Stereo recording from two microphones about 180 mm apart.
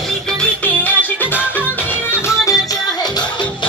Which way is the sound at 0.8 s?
10° left (ahead or behind).